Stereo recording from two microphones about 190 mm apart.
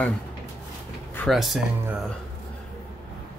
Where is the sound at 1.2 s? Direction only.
Centre (ahead or behind).